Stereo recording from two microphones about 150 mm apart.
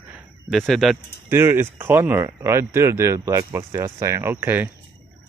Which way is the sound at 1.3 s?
15° right (ahead or behind).